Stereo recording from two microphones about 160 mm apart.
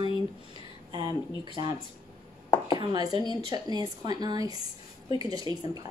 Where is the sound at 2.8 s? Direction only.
25° right (ahead or behind).